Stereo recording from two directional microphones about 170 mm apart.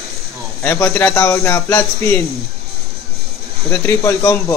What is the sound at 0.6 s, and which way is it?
A man's voice, 15° left (ahead or behind).